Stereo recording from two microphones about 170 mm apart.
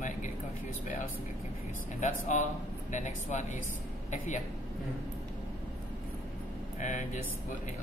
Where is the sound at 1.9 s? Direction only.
45° left (ahead or behind).